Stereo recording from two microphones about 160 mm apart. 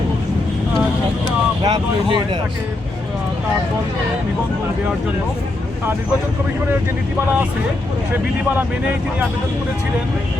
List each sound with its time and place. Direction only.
1.6 s speech: 25° right (ahead or behind)